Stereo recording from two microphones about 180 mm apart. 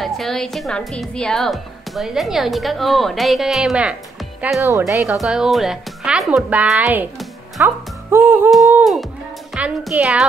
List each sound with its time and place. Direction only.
0.0 s a woman's voice: centre (ahead or behind)
4.6 s speech: 15° right (ahead or behind)
5.0 s speech: 5° right (ahead or behind)
9.5 s speech: 5° right (ahead or behind)